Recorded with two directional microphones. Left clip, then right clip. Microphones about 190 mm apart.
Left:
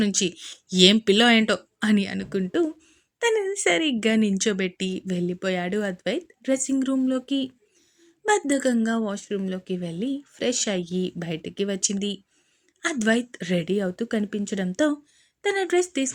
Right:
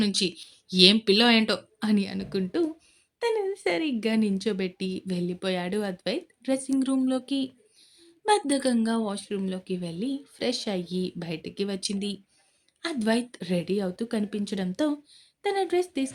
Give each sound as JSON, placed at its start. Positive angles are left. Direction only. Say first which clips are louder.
{"t": 0.0, "sound": "a woman's voice", "louder": "left 2 dB", "side_deg": 20}